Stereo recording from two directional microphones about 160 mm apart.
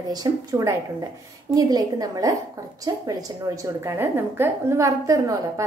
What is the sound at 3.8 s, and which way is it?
A woman's voice, 15° right (ahead or behind).